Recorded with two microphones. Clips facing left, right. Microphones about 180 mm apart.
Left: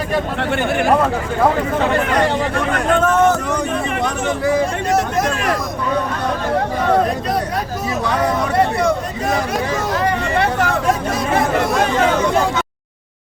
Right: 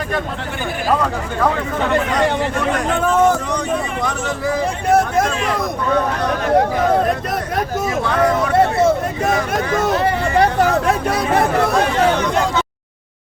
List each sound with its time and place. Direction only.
4.9 s speech: 55° right (ahead or behind)
9.9 s vehicle: 35° right (ahead or behind)